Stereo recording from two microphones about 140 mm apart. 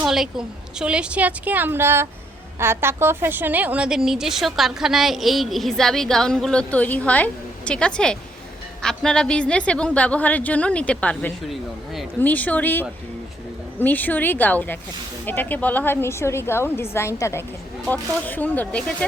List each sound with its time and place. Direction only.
0.0 s a woman's voice: 5° right (ahead or behind)